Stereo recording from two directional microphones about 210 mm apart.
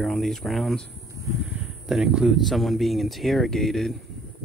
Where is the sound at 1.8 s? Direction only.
Centre (ahead or behind).